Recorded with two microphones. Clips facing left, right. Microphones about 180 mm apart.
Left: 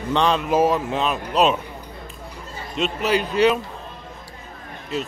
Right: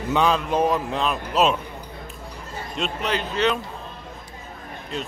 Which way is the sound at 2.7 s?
5° left (ahead or behind).